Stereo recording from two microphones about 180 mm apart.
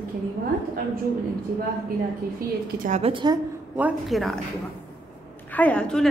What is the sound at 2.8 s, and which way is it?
Speech, 40° right (ahead or behind).